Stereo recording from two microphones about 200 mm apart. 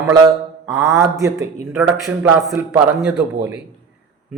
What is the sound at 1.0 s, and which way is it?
Speech, 15° right (ahead or behind).